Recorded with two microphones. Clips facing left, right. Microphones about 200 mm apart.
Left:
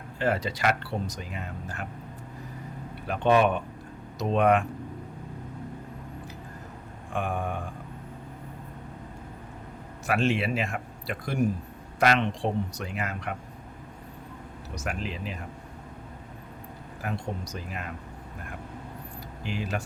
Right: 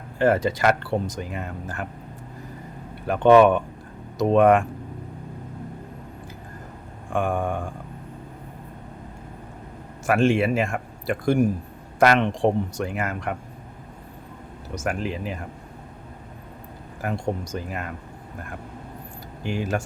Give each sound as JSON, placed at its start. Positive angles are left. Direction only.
{"t": 0.2, "sound": "speech", "side_deg": -50}
{"t": 3.1, "sound": "speech", "side_deg": -60}
{"t": 7.1, "sound": "speech", "side_deg": -50}
{"t": 10.1, "sound": "speech", "side_deg": -50}
{"t": 14.8, "sound": "speech", "side_deg": -50}
{"t": 17.0, "sound": "speech", "side_deg": -50}
{"t": 19.5, "sound": "speech", "side_deg": -45}